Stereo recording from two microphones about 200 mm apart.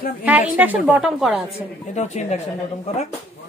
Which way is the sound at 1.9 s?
35° left (ahead or behind).